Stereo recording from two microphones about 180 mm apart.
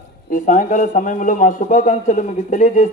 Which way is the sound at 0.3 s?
45° left (ahead or behind).